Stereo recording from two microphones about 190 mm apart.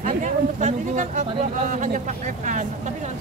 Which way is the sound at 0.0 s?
40° right (ahead or behind).